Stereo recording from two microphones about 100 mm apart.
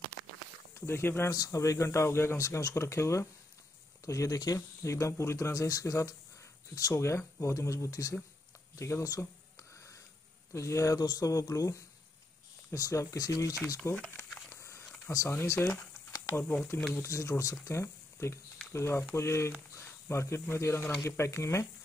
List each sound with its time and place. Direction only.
0.7 s speech: 25° left (ahead or behind)
1.3 s speech: 35° left (ahead or behind)
10.5 s speech: 30° left (ahead or behind)
14.1 s a sound: 25° left (ahead or behind)
15.0 s speech: 25° left (ahead or behind)
16.9 s speech: 30° left (ahead or behind)